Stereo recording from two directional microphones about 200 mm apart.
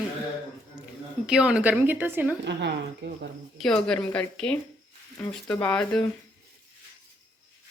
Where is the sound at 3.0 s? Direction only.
60° right (ahead or behind).